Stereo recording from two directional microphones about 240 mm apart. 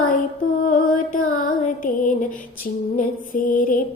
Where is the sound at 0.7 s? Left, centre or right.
Left.